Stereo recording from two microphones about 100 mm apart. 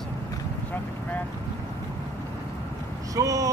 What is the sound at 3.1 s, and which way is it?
Speech, 35° right (ahead or behind).